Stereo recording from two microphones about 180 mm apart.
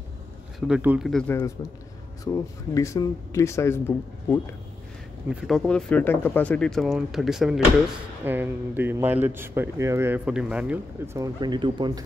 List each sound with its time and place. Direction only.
0.7 s speech: 5° right (ahead or behind)
1.6 s a man's voice: 20° left (ahead or behind)
5.3 s a man's voice: centre (ahead or behind)
11.1 s speech: 20° right (ahead or behind)